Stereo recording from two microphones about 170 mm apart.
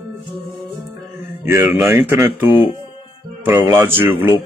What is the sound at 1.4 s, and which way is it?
A man's voice, 15° right (ahead or behind).